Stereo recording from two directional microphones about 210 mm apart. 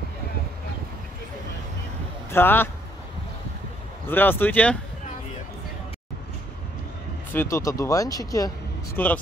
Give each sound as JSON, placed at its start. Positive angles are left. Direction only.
{"t": 2.3, "sound": "speech", "side_deg": 10}
{"t": 4.1, "sound": "speech", "side_deg": 10}
{"t": 7.3, "sound": "speech", "side_deg": 15}